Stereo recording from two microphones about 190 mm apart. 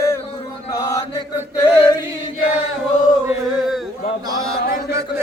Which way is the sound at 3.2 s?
Centre (ahead or behind).